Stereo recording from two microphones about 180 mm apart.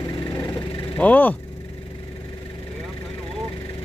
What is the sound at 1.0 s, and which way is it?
Speech, 10° left (ahead or behind).